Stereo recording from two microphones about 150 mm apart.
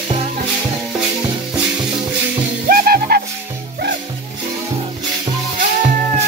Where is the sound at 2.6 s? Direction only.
80° right.